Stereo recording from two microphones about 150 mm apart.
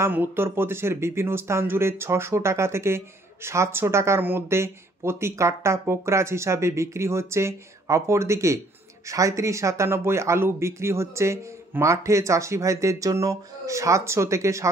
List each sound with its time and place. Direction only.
0.0 s speech: 15° right (ahead or behind)